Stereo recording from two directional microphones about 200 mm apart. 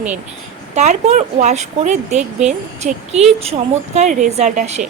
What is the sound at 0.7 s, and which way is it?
Speech, 35° right (ahead or behind).